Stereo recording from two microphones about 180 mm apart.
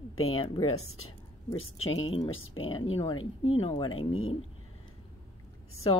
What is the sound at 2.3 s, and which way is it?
Speech, 90° left.